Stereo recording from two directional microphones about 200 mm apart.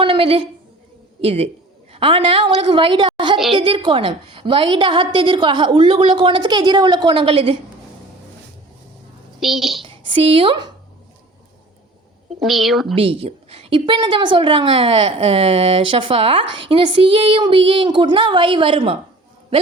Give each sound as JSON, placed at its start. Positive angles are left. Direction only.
{"t": 0.0, "sound": "a sound", "side_deg": -25}
{"t": 1.2, "sound": "a man's voice", "side_deg": -30}
{"t": 9.4, "sound": "speech", "side_deg": 0}
{"t": 9.8, "sound": "a woman's voice", "side_deg": -25}
{"t": 12.4, "sound": "speech", "side_deg": 0}
{"t": 13.0, "sound": "a woman's voice", "side_deg": -30}